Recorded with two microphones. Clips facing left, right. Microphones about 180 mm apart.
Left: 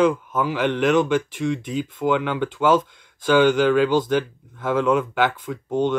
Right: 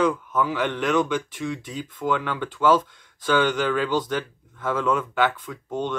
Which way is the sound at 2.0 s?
20° left (ahead or behind).